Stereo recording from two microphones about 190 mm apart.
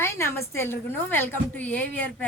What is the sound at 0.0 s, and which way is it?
A woman's voice, 15° left (ahead or behind).